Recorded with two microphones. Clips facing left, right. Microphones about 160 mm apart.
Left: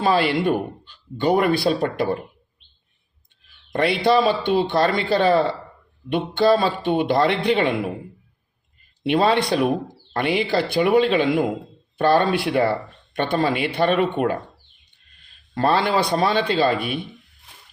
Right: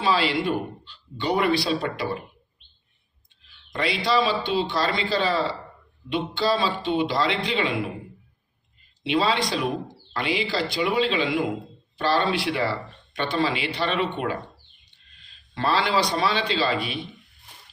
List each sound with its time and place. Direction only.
0.0 s speech: 55° left (ahead or behind)
3.4 s a man's voice: 55° left (ahead or behind)
9.0 s a man's voice: 55° left (ahead or behind)